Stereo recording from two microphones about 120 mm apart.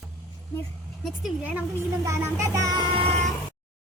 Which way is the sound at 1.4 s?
15° right (ahead or behind).